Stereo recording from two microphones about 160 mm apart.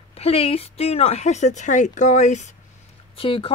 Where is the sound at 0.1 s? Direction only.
40° left (ahead or behind).